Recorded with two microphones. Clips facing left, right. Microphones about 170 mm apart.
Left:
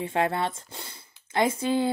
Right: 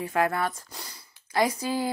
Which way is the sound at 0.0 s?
25° left (ahead or behind).